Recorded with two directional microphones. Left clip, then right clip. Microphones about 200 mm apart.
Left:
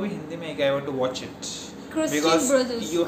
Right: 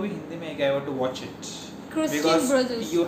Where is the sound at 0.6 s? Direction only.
20° left (ahead or behind).